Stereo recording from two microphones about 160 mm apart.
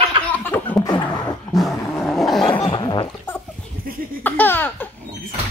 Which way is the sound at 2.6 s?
35° left (ahead or behind).